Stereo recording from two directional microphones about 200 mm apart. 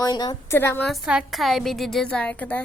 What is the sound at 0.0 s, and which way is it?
Speech, 20° left (ahead or behind).